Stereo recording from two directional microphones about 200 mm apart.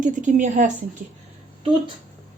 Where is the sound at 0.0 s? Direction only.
40° right (ahead or behind).